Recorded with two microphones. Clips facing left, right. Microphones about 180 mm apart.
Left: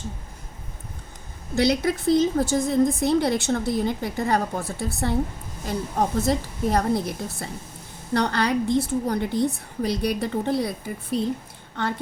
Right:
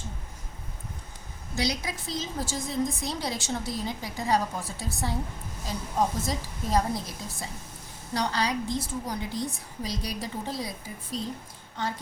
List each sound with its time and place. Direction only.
1.5 s a woman's voice: 60° left (ahead or behind)